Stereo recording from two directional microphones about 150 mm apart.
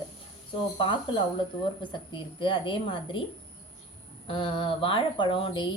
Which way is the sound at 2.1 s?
35° left (ahead or behind).